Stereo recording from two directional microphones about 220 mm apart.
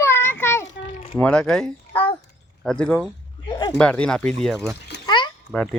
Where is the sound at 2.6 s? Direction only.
5° left (ahead or behind).